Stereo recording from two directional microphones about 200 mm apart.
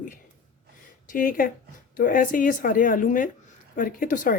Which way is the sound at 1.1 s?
45° left (ahead or behind).